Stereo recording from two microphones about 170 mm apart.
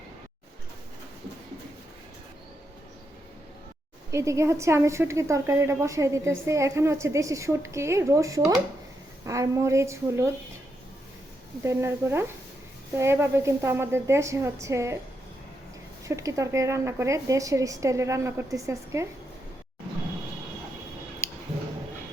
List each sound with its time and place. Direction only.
4.1 s a woman's voice: 20° right (ahead or behind)
11.6 s a woman's voice: 15° right (ahead or behind)
16.0 s a woman's voice: 20° right (ahead or behind)
21.2 s a sound: 15° left (ahead or behind)